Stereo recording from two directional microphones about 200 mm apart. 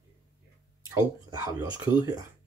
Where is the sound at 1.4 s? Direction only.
20° right (ahead or behind).